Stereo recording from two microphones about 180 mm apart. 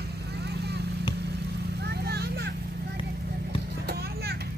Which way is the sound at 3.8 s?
65° right (ahead or behind).